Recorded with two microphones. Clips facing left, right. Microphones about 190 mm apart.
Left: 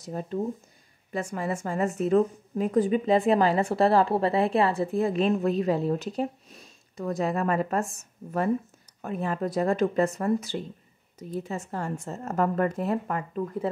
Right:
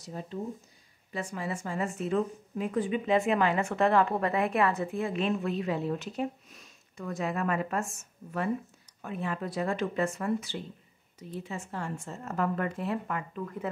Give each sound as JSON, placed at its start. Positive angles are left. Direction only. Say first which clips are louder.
{"t": 0.0, "sound": "a woman's voice", "louder": "left 7 dB", "side_deg": 50}